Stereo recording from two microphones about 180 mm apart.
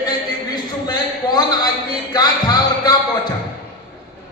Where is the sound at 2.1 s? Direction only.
20° left (ahead or behind).